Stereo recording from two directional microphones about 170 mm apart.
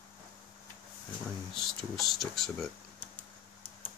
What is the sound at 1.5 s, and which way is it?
Speech, centre (ahead or behind).